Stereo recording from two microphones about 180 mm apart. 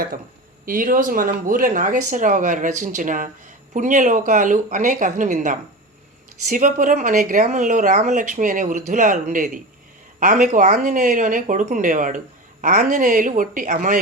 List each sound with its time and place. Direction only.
0.6 s speech: 50° right (ahead or behind)